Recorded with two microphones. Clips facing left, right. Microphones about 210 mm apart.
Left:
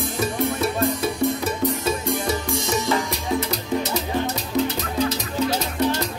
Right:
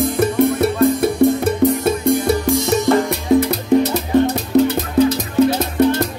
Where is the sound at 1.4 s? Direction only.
60° right (ahead or behind).